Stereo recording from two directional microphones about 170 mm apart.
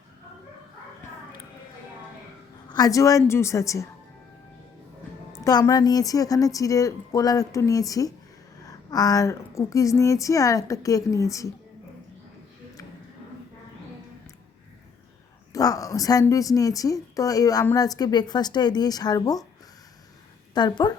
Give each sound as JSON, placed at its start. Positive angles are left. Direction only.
{"t": 2.6, "sound": "a woman's voice", "side_deg": 20}
{"t": 5.3, "sound": "speech", "side_deg": 20}
{"t": 15.5, "sound": "speech", "side_deg": 20}
{"t": 20.5, "sound": "a woman's voice", "side_deg": 25}